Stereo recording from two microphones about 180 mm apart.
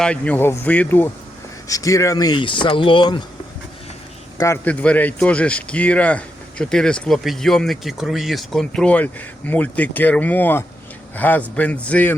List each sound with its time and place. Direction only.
0.0 s speech: 5° left (ahead or behind); by 3.2 s 25° left (ahead or behind)
4.4 s speech: 15° left (ahead or behind)